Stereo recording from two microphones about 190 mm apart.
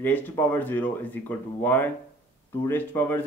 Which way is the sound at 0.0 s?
10° left (ahead or behind).